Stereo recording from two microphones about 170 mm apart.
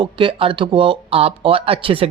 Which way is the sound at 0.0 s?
30° right (ahead or behind).